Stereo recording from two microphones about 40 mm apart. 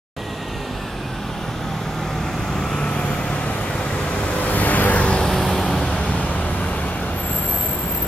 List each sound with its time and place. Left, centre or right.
4.5 s vehicle: left
4.9 s vehicle: left
5.3 s vehicle: centre